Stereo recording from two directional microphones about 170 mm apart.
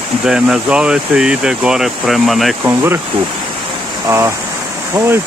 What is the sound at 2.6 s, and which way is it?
Speech, 15° right (ahead or behind).